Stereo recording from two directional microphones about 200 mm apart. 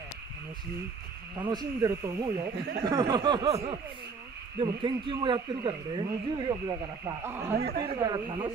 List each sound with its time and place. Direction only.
1.3 s speech: 20° right (ahead or behind)
7.8 s speech: 25° right (ahead or behind)